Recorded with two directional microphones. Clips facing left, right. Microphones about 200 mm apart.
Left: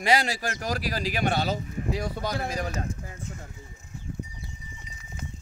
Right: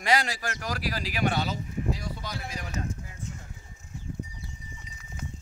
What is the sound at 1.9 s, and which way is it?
Speech, 65° left (ahead or behind).